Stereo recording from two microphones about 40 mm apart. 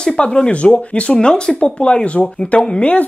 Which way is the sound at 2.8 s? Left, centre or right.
Left.